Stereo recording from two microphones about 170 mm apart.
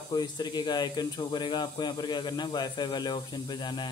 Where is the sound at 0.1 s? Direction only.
25° left (ahead or behind).